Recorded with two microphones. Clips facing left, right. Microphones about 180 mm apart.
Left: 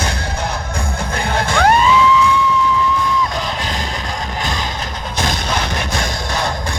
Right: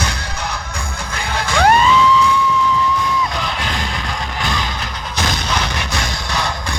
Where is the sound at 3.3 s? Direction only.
40° left (ahead or behind).